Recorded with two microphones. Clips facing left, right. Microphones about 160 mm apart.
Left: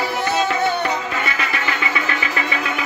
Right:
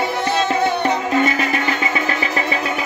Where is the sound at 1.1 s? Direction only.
40° right (ahead or behind).